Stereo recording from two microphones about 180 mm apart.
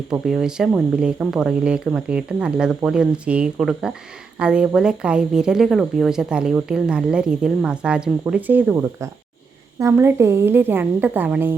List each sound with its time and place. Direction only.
0.1 s a woman's voice: 5° right (ahead or behind)